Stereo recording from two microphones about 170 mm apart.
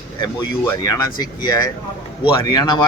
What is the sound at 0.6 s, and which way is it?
Speech, 20° left (ahead or behind).